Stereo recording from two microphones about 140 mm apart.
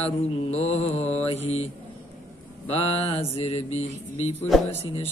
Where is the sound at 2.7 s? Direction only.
45° left (ahead or behind).